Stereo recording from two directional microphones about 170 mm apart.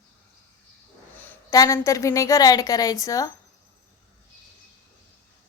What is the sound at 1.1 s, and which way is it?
A woman's voice, 10° left (ahead or behind).